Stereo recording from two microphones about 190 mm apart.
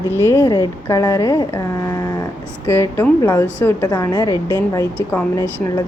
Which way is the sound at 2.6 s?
15° left (ahead or behind).